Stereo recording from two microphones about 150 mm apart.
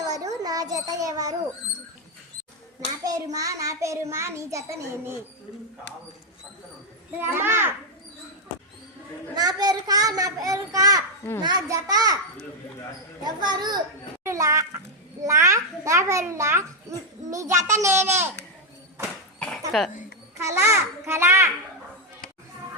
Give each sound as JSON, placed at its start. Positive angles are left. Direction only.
{"t": 0.0, "sound": "a sound", "side_deg": -25}
{"t": 3.0, "sound": "a child's voice", "side_deg": -25}
{"t": 7.2, "sound": "a child's voice", "side_deg": -15}
{"t": 9.3, "sound": "a child's voice", "side_deg": -25}
{"t": 13.2, "sound": "a child's voice", "side_deg": -30}
{"t": 19.4, "sound": "speech", "side_deg": 5}
{"t": 20.4, "sound": "a child's voice", "side_deg": -20}